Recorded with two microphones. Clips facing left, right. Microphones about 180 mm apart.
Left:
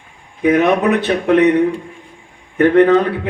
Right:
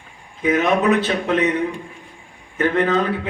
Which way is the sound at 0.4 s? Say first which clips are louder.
Left 4 dB; 60° left (ahead or behind).